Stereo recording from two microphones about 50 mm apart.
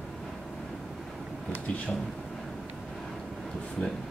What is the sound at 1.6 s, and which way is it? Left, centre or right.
Speech, left.